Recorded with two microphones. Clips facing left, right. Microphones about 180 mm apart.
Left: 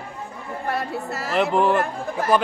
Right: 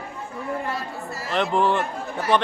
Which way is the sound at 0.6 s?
65° left (ahead or behind).